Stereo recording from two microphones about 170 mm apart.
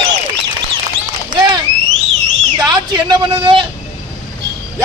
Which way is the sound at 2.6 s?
25° right (ahead or behind).